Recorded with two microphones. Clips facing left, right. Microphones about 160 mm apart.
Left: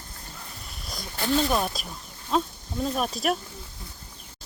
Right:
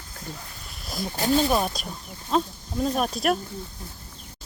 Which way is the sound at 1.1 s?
40° right (ahead or behind).